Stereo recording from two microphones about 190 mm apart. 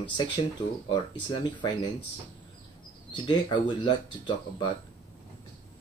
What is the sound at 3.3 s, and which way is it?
Speech, 25° left (ahead or behind).